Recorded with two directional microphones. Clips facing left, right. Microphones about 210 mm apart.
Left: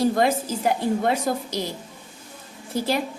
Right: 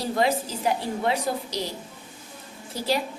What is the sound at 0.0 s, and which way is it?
A woman's voice, 50° left (ahead or behind).